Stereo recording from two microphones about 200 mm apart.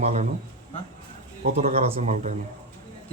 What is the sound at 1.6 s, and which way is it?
Speech, 30° right (ahead or behind).